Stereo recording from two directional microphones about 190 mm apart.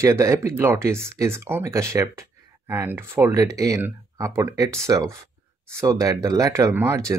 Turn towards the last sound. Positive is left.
turn(degrees=-15)  # may be behind; listen again after turning